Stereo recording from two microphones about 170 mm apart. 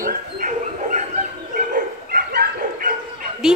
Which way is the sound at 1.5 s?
55° right (ahead or behind).